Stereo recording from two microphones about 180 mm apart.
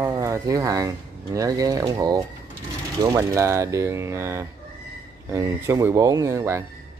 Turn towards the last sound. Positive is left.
turn(degrees=-15)  # may be behind; listen again after turning